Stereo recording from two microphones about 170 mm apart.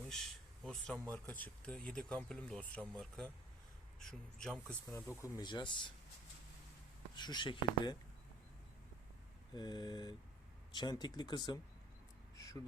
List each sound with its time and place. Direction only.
0.1 s speech: centre (ahead or behind); by 5.9 s 25° left (ahead or behind)
7.2 s speech: 25° left (ahead or behind)
9.5 s speech: 25° left (ahead or behind)
12.4 s a sound: 20° left (ahead or behind)